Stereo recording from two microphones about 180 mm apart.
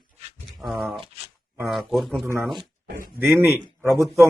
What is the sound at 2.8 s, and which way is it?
Speech, 50° right (ahead or behind).